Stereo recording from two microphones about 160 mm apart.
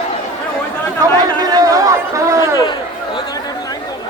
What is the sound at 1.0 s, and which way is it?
Chatter, 25° right (ahead or behind).